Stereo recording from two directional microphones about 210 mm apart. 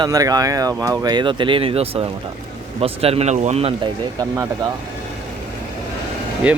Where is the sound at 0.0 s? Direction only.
15° right (ahead or behind).